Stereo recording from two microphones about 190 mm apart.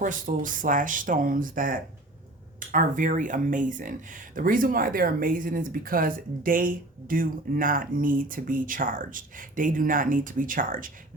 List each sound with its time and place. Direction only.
0.0 s speech: 45° right (ahead or behind)